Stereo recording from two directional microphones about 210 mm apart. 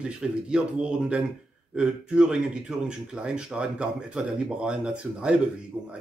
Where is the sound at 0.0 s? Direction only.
5° right (ahead or behind).